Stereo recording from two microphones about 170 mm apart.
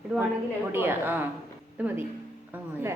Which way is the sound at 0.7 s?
10° right (ahead or behind).